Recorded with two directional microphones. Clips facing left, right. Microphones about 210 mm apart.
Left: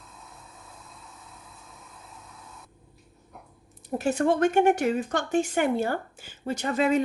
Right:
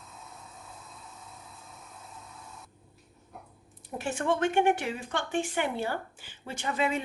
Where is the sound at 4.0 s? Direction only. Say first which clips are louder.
Left 5 dB; 40° left (ahead or behind).